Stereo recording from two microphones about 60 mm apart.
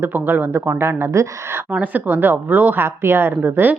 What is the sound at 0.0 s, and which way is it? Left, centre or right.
Speech, right.